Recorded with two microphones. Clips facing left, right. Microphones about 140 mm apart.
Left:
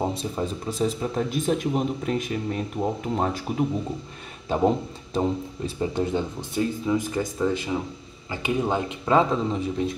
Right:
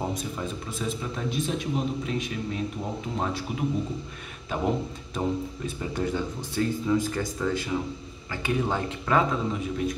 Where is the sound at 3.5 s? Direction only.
40° left (ahead or behind).